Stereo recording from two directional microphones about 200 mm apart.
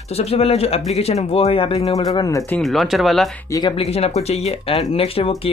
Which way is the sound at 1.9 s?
20° left (ahead or behind).